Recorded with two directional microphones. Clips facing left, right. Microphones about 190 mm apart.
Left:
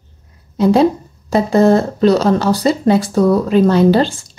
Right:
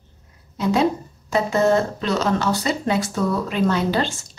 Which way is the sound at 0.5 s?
35° left (ahead or behind).